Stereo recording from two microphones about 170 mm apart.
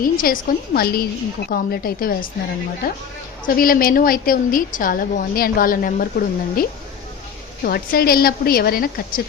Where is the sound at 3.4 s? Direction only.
60° left (ahead or behind).